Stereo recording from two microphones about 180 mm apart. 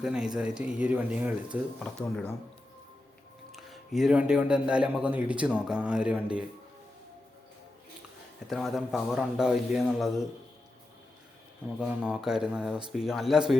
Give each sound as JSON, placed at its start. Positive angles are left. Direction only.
{"t": 0.0, "sound": "a man's voice", "side_deg": -5}
{"t": 1.8, "sound": "a man's voice", "side_deg": 5}
{"t": 3.5, "sound": "a man's voice", "side_deg": 0}
{"t": 8.4, "sound": "a man's voice", "side_deg": 0}
{"t": 11.8, "sound": "a man's voice", "side_deg": -5}